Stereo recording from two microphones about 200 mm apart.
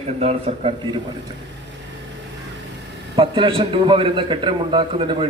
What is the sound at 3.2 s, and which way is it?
A man's voice, 25° right (ahead or behind).